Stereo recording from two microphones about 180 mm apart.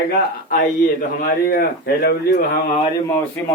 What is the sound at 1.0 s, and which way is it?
A man's voice, 55° left (ahead or behind).